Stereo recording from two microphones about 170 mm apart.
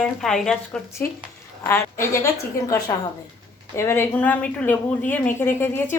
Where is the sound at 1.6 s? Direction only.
15° left (ahead or behind).